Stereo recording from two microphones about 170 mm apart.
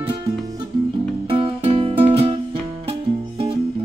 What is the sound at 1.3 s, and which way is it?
Music, 35° right (ahead or behind).